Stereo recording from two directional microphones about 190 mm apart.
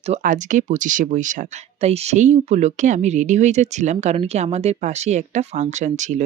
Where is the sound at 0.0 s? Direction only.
40° right (ahead or behind).